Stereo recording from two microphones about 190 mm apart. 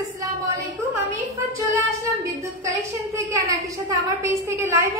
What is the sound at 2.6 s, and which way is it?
A woman's voice, 15° right (ahead or behind).